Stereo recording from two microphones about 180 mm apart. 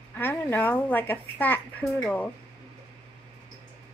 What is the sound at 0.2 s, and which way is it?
A woman's voice, 10° left (ahead or behind).